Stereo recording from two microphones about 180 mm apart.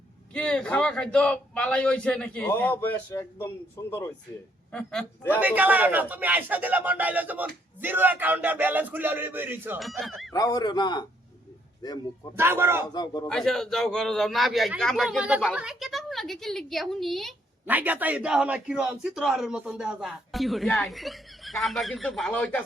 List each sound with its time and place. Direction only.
0.3 s a man's voice: 5° left (ahead or behind)
5.4 s speech: 10° right (ahead or behind)
9.8 s a man's voice: centre (ahead or behind)
10.3 s a man's voice: 20° left (ahead or behind)
12.4 s speech: 10° right (ahead or behind)
12.9 s a man's voice: 25° left (ahead or behind)
13.2 s a man's voice: centre (ahead or behind)
17.7 s a man's voice: 10° right (ahead or behind); by 22.6 s 5° left (ahead or behind)